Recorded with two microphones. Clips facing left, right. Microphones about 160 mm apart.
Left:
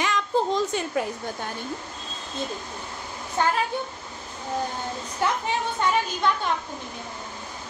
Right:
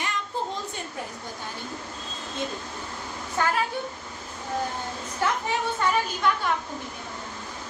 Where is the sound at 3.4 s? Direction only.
25° left (ahead or behind).